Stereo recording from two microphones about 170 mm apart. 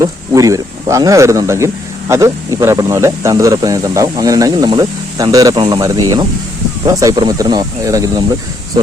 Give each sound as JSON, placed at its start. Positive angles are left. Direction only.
{"t": 0.0, "sound": "speech", "side_deg": -20}